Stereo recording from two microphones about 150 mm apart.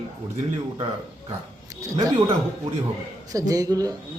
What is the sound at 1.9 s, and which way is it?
Speech, 25° right (ahead or behind).